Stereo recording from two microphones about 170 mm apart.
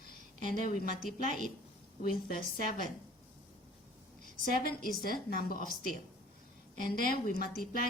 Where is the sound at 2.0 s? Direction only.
60° left (ahead or behind).